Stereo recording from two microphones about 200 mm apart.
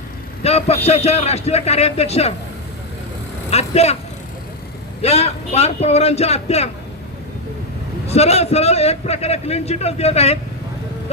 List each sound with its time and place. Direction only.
0.4 s a man's voice: 30° left (ahead or behind)
3.5 s a man's voice: 30° left (ahead or behind)
5.0 s a man's voice: 30° left (ahead or behind)
8.0 s a man's voice: 30° left (ahead or behind)